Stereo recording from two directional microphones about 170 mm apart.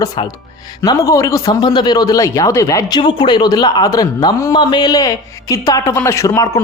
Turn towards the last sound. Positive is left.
turn(degrees=20)  # may be behind; listen again after turning